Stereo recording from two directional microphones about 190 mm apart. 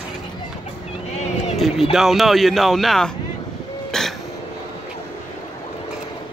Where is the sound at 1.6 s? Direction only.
Centre (ahead or behind).